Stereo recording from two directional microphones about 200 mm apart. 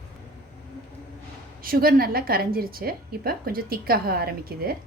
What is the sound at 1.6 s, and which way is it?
A woman's voice, 45° right (ahead or behind).